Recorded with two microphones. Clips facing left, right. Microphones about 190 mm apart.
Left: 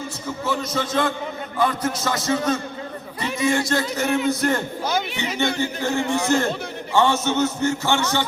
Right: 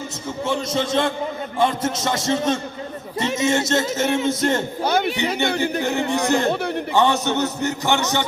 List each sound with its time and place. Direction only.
0.4 s a man's voice: 25° right (ahead or behind)
4.8 s a sound: 60° right (ahead or behind)
5.2 s speech: 60° right (ahead or behind)
6.1 s a man's voice: 15° right (ahead or behind)